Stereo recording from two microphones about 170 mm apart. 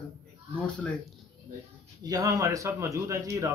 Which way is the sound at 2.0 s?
20° right (ahead or behind).